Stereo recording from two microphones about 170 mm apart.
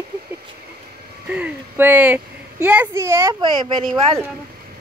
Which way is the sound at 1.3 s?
10° right (ahead or behind).